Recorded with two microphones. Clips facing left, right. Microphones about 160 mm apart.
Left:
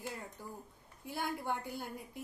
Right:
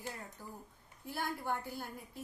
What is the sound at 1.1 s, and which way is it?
A woman's voice, 15° left (ahead or behind).